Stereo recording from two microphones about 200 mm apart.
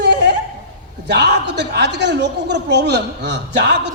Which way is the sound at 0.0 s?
60° right (ahead or behind).